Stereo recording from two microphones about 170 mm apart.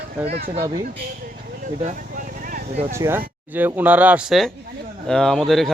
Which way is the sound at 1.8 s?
50° right (ahead or behind).